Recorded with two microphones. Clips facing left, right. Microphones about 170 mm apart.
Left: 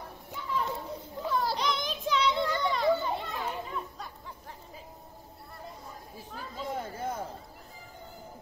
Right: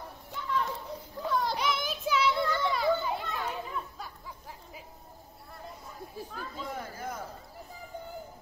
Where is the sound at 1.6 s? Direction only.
5° right (ahead or behind).